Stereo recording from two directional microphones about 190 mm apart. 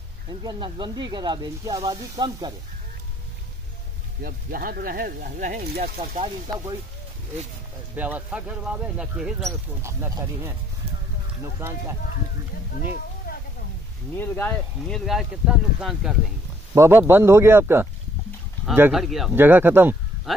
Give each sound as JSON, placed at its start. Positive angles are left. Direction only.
{"t": 0.3, "sound": "speech", "side_deg": -20}
{"t": 4.2, "sound": "speech", "side_deg": -50}
{"t": 6.1, "sound": "speech", "side_deg": -30}
{"t": 7.9, "sound": "speech", "side_deg": -10}
{"t": 9.5, "sound": "speech", "side_deg": -15}
{"t": 13.3, "sound": "a sound", "side_deg": 50}
{"t": 14.1, "sound": "speech", "side_deg": 10}